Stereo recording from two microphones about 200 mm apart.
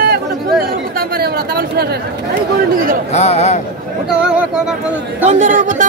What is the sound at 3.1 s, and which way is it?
Speech, 35° left (ahead or behind).